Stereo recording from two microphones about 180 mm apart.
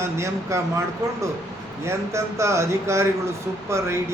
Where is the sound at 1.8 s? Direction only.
15° right (ahead or behind).